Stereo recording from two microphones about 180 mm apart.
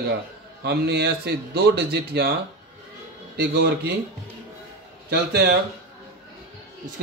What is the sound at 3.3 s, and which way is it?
Speech, 65° right (ahead or behind).